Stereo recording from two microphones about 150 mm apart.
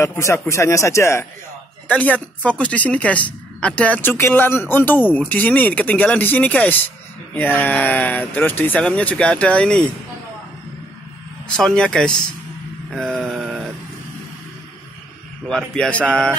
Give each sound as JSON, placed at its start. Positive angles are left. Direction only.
{"t": 0.0, "sound": "a man's voice", "side_deg": 20}
{"t": 11.5, "sound": "a man's voice", "side_deg": 5}
{"t": 12.9, "sound": "a sound", "side_deg": 0}
{"t": 15.4, "sound": "a man's voice", "side_deg": 5}